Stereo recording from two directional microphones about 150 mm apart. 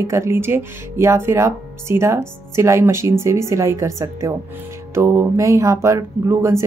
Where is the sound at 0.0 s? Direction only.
20° right (ahead or behind).